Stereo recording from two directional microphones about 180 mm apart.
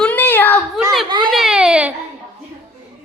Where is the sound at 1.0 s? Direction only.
25° right (ahead or behind).